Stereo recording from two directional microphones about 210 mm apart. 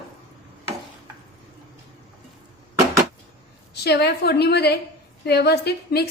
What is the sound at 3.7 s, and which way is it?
A woman's voice, 50° left (ahead or behind).